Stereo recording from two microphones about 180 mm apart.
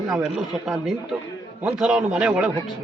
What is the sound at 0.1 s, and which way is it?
A man's voice, centre (ahead or behind).